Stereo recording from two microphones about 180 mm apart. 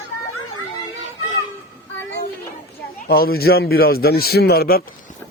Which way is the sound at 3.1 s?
55° left (ahead or behind).